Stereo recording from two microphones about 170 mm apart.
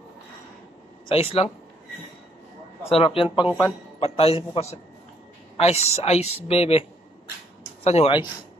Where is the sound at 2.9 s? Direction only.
35° left (ahead or behind).